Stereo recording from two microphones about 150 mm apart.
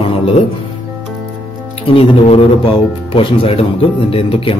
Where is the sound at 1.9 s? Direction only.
35° left (ahead or behind).